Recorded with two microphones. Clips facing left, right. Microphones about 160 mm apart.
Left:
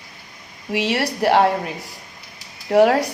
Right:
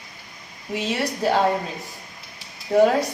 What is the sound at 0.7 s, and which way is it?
A woman's voice, 75° left (ahead or behind).